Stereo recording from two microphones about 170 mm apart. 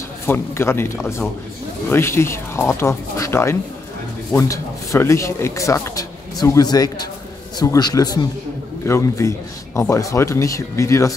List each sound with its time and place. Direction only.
0.3 s a man's voice: 15° left (ahead or behind)